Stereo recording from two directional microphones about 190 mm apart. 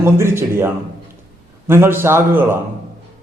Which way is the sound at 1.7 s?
10° right (ahead or behind).